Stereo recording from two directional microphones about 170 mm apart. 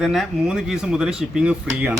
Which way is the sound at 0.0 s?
5° right (ahead or behind).